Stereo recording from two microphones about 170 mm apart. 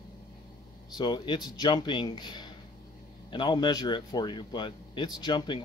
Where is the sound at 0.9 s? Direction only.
25° left (ahead or behind).